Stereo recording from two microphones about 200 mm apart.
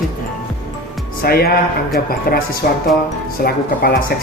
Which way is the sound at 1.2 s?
50° left (ahead or behind).